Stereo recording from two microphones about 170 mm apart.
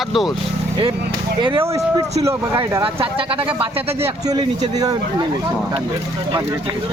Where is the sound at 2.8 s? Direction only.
30° right (ahead or behind).